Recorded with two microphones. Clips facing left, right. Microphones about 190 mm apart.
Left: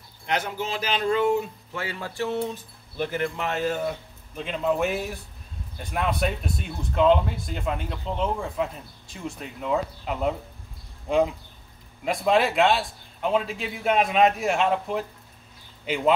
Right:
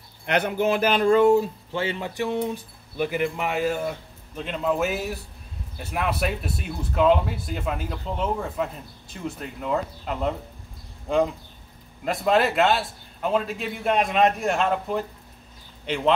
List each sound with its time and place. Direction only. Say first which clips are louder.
0.3 s speech: right 6 dB; 60° right (ahead or behind); by 16.1 s 5° left (ahead or behind)